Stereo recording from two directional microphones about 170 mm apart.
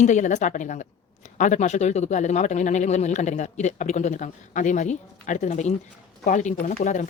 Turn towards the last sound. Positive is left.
turn(degrees=50)  # may be behind; listen again after turning